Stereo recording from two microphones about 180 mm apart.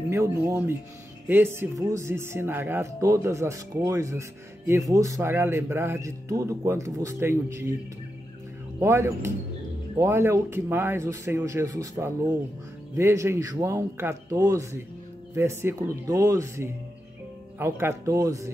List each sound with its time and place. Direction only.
0.1 s speech: 15° right (ahead or behind)
8.7 s speech: 15° right (ahead or behind)